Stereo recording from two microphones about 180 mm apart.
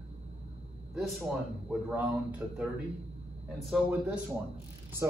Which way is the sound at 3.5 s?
5° right (ahead or behind).